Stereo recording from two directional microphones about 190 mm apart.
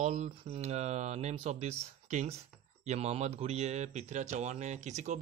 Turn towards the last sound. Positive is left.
turn(degrees=-40)  # may be behind; listen again after turning